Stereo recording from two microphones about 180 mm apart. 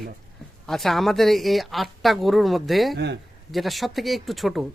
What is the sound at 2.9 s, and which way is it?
Speech, 70° right (ahead or behind).